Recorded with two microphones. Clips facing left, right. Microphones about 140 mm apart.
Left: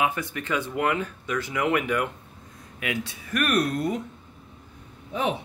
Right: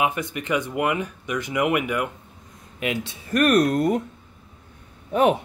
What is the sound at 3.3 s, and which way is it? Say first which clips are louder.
Speech: right 6 dB; 40° right (ahead or behind).